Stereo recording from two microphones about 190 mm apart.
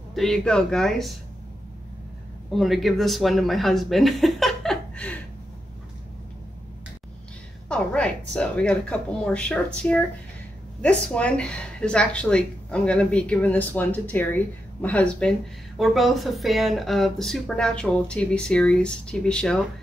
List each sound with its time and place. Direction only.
0.1 s speech: centre (ahead or behind)
2.5 s speech: centre (ahead or behind)
7.6 s speech: 5° left (ahead or behind)